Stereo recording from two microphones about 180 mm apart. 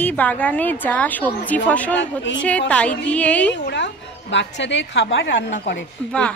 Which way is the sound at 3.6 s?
80° left.